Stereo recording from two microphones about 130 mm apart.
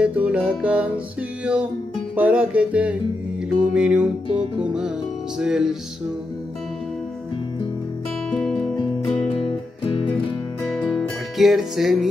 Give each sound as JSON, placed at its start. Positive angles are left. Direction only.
{"t": 0.0, "sound": "music", "side_deg": -10}
{"t": 8.3, "sound": "music", "side_deg": 0}
{"t": 8.7, "sound": "music", "side_deg": 40}
{"t": 10.7, "sound": "music", "side_deg": 0}